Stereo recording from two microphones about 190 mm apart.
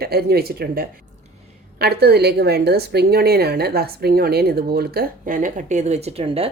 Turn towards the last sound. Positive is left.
turn(degrees=-30)  # may be behind; listen again after turning